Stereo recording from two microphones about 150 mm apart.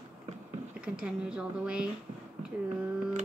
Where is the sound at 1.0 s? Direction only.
5° right (ahead or behind).